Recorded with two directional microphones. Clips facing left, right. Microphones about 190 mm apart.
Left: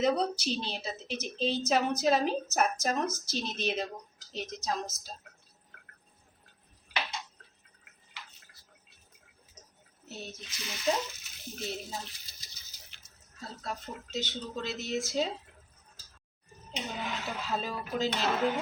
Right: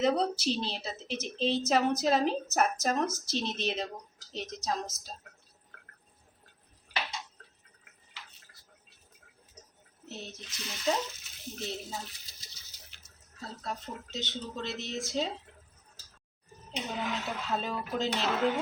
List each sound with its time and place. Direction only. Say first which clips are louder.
0.0 s a woman's voice: right 1 dB; centre (ahead or behind)
10.1 s a woman's voice: even; centre (ahead or behind)
13.6 s a woman's voice: even; centre (ahead or behind)
16.7 s a woman's voice: right 2 dB; centre (ahead or behind)